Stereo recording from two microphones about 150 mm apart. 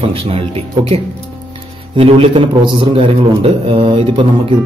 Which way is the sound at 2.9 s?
40° right (ahead or behind).